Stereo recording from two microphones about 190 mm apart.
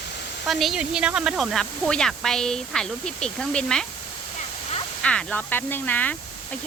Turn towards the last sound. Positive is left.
turn(degrees=10)  # may be behind; listen again after turning